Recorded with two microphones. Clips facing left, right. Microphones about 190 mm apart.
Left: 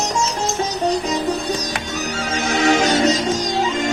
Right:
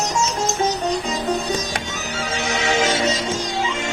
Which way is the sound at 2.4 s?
45° left (ahead or behind).